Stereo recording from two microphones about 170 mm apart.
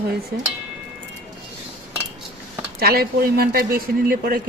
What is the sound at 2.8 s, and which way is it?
Speech, 65° right (ahead or behind).